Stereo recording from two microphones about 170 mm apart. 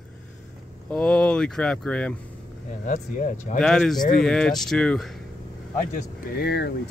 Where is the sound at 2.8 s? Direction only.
50° left (ahead or behind).